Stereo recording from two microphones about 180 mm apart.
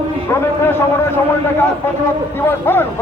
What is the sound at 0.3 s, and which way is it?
Speech, 15° left (ahead or behind).